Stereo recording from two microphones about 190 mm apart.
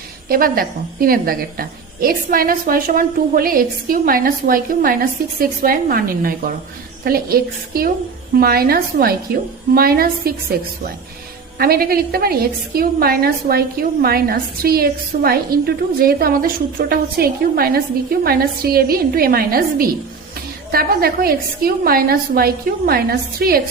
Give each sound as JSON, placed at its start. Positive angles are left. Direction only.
{"t": 0.3, "sound": "a woman's voice", "side_deg": -50}